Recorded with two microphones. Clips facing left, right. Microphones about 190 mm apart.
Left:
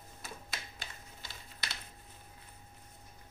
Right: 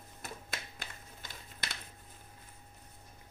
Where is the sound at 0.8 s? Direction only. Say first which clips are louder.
Right 1 dB; 50° right (ahead or behind).